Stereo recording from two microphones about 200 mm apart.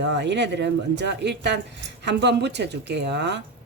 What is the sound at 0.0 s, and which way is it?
Speech, 60° right (ahead or behind).